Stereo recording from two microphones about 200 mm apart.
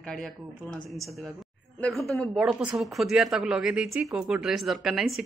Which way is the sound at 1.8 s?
Centre (ahead or behind).